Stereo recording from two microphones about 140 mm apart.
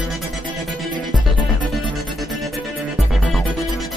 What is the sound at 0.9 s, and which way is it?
Music, 30° right (ahead or behind).